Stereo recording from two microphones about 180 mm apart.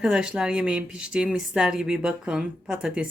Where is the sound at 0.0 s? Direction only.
5° right (ahead or behind).